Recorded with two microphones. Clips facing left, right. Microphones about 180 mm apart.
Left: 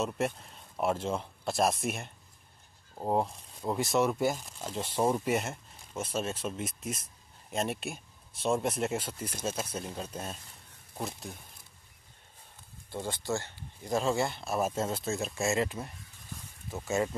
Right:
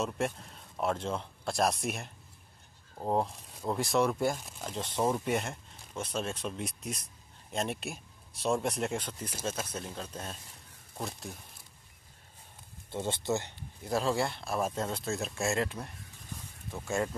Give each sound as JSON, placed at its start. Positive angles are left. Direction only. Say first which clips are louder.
{"t": 0.0, "sound": "speech", "louder": "left 1 dB", "side_deg": 0}
{"t": 12.9, "sound": "speech", "louder": "right 2 dB", "side_deg": -20}
{"t": 13.8, "sound": "speech", "louder": "left 1 dB", "side_deg": 0}